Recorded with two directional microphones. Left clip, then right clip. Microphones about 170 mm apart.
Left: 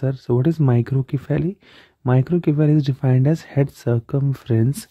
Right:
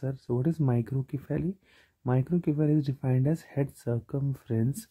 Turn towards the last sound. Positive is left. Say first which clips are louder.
# left 10 dB
turn(degrees=30)  # may be behind; listen again after turning